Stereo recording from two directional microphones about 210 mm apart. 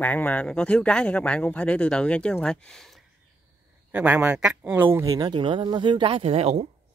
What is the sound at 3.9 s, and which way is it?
Speech, 10° right (ahead or behind).